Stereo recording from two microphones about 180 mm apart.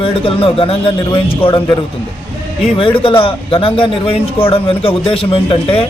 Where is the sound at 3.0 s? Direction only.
30° left (ahead or behind).